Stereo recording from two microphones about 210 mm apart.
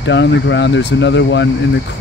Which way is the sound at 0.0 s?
60° left (ahead or behind).